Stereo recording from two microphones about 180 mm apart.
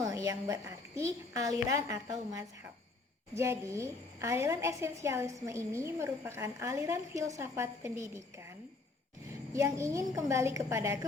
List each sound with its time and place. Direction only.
0.0 s a woman's voice: 15° right (ahead or behind)
9.5 s a woman's voice: 15° right (ahead or behind)